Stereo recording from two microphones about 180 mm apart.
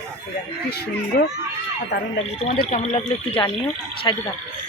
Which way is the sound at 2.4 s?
40° left (ahead or behind).